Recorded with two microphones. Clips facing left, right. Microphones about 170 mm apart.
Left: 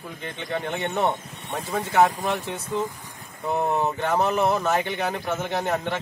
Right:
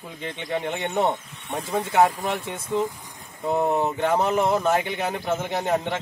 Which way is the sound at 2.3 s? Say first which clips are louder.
Left 1 dB; 10° right (ahead or behind).